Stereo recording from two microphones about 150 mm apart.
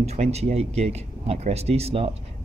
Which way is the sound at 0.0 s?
45° right (ahead or behind).